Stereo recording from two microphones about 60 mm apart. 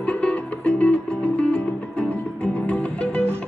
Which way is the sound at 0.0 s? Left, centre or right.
Left.